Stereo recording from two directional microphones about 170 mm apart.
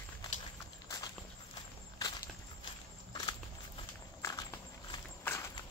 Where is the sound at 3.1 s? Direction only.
25° left (ahead or behind).